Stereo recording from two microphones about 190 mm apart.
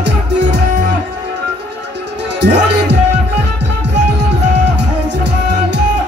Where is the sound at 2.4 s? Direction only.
65° right (ahead or behind).